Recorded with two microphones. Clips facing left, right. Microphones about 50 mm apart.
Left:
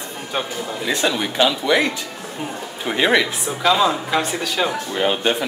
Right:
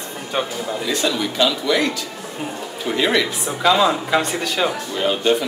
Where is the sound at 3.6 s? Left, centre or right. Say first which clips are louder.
Right 1 dB; centre.